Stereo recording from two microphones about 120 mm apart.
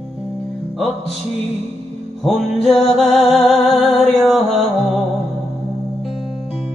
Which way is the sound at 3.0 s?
60° left (ahead or behind).